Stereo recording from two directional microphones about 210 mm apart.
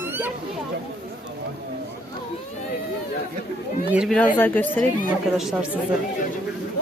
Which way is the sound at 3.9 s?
Centre (ahead or behind).